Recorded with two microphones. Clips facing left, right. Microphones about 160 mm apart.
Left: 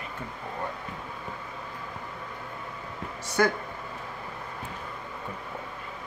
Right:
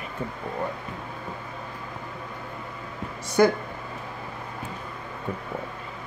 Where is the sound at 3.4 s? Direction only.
15° right (ahead or behind).